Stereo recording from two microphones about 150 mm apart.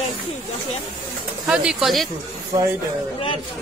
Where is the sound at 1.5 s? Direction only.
5° right (ahead or behind).